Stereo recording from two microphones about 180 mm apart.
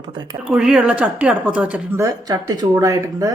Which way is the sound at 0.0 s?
25° right (ahead or behind).